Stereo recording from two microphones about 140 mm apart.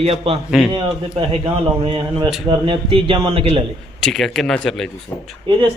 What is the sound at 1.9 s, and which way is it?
Speech, 40° right (ahead or behind).